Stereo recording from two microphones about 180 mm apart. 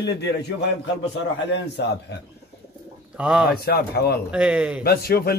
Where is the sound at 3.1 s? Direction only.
5° right (ahead or behind).